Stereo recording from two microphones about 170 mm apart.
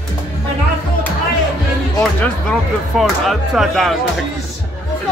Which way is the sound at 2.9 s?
Centre (ahead or behind).